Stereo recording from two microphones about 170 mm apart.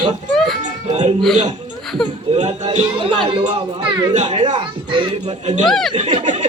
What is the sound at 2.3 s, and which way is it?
Speech, 40° right (ahead or behind).